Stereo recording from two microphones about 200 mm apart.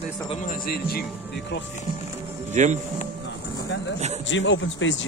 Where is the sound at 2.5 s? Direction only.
35° right (ahead or behind).